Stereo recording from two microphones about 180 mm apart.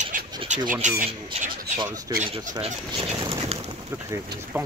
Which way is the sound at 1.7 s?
25° right (ahead or behind).